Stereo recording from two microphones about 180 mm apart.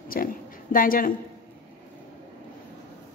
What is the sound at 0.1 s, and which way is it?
A woman's voice, 55° left (ahead or behind).